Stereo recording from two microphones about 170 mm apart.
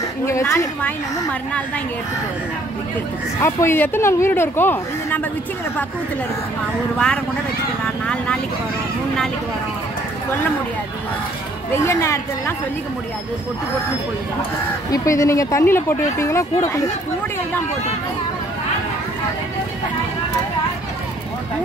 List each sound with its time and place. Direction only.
0.3 s speech: 15° left (ahead or behind)
3.3 s speech: 15° left (ahead or behind)
11.7 s speech: 15° left (ahead or behind)
14.9 s speech: 20° left (ahead or behind)